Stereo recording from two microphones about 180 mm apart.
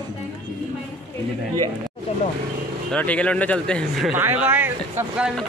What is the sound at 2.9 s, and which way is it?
Speech, 5° left (ahead or behind).